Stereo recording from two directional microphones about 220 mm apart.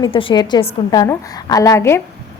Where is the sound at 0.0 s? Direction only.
25° left (ahead or behind).